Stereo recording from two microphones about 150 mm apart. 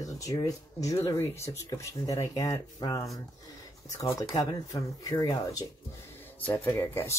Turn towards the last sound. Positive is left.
turn(degrees=20)  # may be behind; listen again after turning